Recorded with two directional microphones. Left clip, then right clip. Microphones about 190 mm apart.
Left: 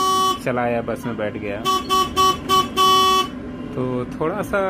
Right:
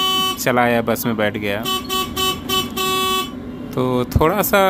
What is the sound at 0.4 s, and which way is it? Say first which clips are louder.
Speech: right 5 dB; 5° right (ahead or behind).